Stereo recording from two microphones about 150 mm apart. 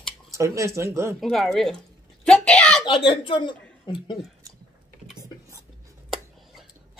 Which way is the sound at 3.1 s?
35° left (ahead or behind).